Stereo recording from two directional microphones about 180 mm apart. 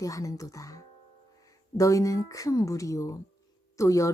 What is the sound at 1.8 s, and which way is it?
Speech, 20° left (ahead or behind).